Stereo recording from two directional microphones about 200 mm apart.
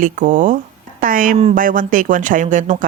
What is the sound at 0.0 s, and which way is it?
Speech, 40° right (ahead or behind).